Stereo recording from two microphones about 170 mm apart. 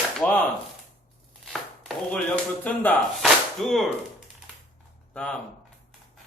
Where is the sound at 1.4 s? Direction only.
Centre (ahead or behind).